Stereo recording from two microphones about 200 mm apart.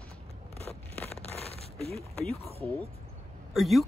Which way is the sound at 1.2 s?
30° left (ahead or behind).